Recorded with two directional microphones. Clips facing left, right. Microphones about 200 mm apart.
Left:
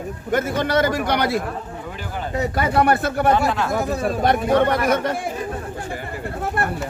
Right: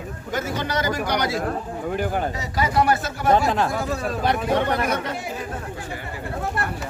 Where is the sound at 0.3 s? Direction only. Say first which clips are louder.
Left 6 dB; 55° left (ahead or behind).